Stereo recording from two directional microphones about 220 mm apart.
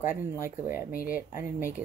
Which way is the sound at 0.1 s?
10° right (ahead or behind).